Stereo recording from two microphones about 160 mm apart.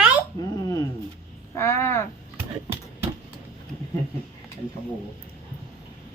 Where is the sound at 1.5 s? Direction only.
15° left (ahead or behind).